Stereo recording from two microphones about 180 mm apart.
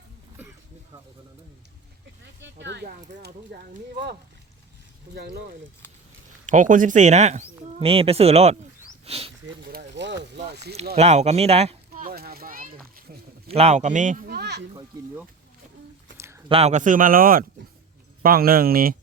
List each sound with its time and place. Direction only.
2.4 s speech: 75° right (ahead or behind)
5.1 s speech: 60° right (ahead or behind)
6.5 s speech: 45° right (ahead or behind)
9.9 s a sound: 75° right (ahead or behind)
10.9 s speech: 40° right (ahead or behind)
11.9 s a sound: 55° right (ahead or behind)
13.5 s speech: 35° right (ahead or behind); by 14.6 s 65° right (ahead or behind)
16.1 s a sound: 15° right (ahead or behind)
16.5 s speech: 35° right (ahead or behind); by 18.9 s 55° right (ahead or behind)